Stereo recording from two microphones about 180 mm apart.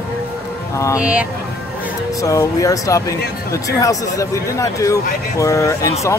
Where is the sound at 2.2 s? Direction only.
20° left (ahead or behind).